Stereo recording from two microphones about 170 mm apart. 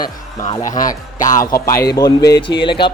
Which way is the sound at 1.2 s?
45° left (ahead or behind).